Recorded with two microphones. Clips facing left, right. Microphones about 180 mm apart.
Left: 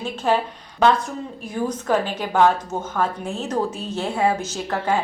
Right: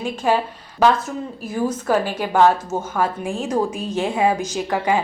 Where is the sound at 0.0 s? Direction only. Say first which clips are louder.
Right 1 dB; 10° right (ahead or behind).